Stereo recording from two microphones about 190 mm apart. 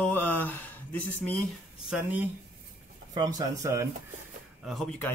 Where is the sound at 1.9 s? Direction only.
10° right (ahead or behind).